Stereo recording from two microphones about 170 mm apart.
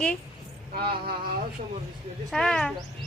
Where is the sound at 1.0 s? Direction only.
60° right (ahead or behind).